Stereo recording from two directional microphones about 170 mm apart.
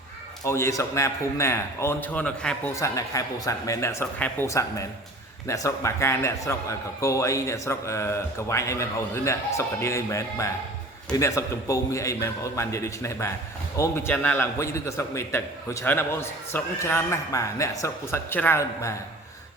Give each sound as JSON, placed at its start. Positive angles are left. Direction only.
{"t": 0.4, "sound": "a man's voice", "side_deg": 15}
{"t": 2.7, "sound": "a man's voice", "side_deg": 20}